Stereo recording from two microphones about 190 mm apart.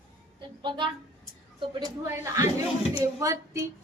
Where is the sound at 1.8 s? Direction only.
15° right (ahead or behind).